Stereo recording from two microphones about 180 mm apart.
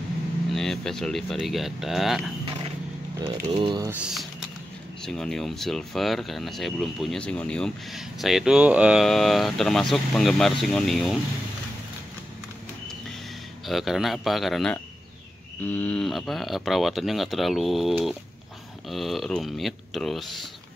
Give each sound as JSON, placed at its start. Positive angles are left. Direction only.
{"t": 0.6, "sound": "speech", "side_deg": 0}
{"t": 3.3, "sound": "speech", "side_deg": -30}
{"t": 4.0, "sound": "speech", "side_deg": 0}
{"t": 13.7, "sound": "speech", "side_deg": 0}